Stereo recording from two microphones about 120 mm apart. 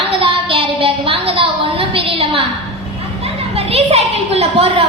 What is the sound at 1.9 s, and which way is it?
Speech, 50° right (ahead or behind).